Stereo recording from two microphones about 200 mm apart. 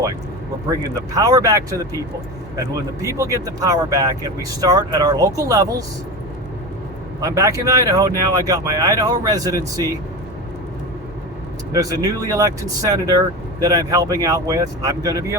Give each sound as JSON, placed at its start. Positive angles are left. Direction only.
{"t": 0.7, "sound": "speech", "side_deg": -15}
{"t": 7.2, "sound": "speech", "side_deg": -15}
{"t": 11.7, "sound": "speech", "side_deg": -20}